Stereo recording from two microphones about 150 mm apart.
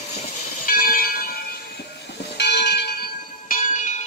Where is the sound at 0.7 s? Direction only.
70° left (ahead or behind).